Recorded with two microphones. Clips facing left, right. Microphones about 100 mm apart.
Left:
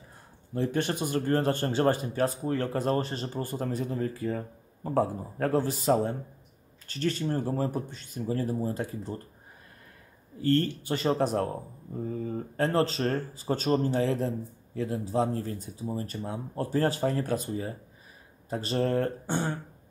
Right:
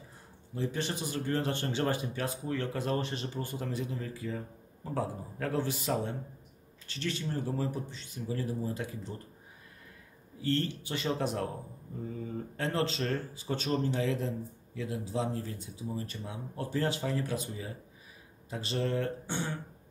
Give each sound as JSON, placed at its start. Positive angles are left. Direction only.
{"t": 0.6, "sound": "speech", "side_deg": 55}
{"t": 10.4, "sound": "speech", "side_deg": 45}